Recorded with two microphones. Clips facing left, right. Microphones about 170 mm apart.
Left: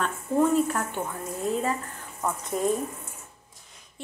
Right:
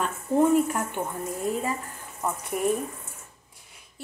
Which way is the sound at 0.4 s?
15° right (ahead or behind).